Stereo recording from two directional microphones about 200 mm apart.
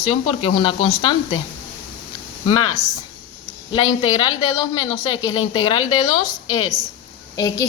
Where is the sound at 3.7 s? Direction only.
25° left (ahead or behind).